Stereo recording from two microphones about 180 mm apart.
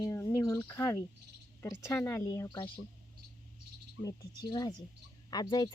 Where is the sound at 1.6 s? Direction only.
15° left (ahead or behind).